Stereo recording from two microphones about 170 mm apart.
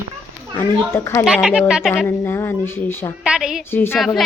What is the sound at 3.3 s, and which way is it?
Speech, 5° right (ahead or behind).